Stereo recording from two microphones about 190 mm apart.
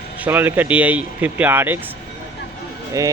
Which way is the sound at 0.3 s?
10° right (ahead or behind).